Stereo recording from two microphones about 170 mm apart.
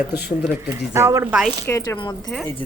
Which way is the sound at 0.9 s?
15° right (ahead or behind).